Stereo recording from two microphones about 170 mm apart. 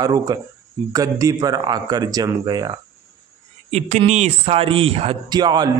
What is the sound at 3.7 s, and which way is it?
Speech, 40° right (ahead or behind).